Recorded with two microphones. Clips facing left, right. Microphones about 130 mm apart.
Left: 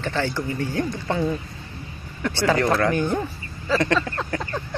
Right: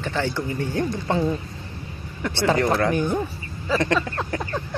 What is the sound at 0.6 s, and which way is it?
Speech, 25° right (ahead or behind).